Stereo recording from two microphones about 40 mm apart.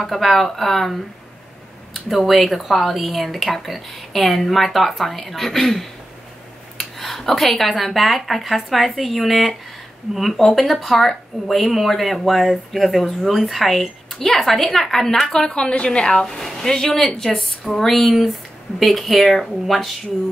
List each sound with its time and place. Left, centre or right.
0.0 s speech: centre
2.0 s a woman's voice: centre; by 16.3 s left
16.3 s a woman's voice: centre